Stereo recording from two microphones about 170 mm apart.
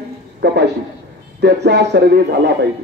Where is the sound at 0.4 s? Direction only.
75° right (ahead or behind).